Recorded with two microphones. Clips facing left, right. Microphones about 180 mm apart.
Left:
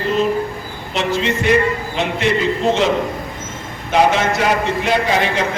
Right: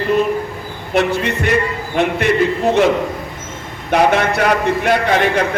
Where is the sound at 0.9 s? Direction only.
60° right (ahead or behind).